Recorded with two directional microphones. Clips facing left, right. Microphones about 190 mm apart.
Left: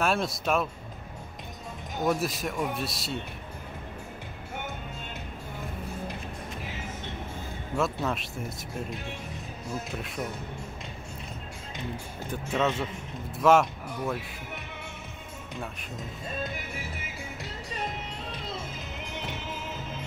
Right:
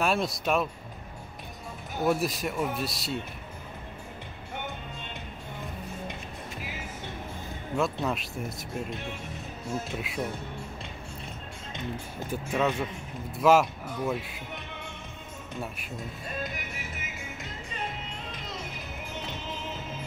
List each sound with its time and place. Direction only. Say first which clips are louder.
0.0 s speech: even; centre (ahead or behind)
2.0 s speech: right 1 dB; centre (ahead or behind)
7.7 s speech: even; centre (ahead or behind)
9.9 s speech: right 2 dB; centre (ahead or behind)
12.3 s speech: even; 10° right (ahead or behind)
16.0 s music: left 1 dB; 30° left (ahead or behind)
19.0 s music: even; 10° left (ahead or behind)